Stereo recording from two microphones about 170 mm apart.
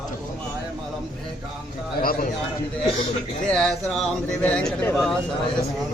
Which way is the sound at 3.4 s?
5° left (ahead or behind).